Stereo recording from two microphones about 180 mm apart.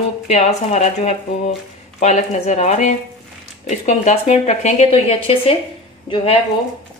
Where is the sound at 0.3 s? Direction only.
35° left (ahead or behind).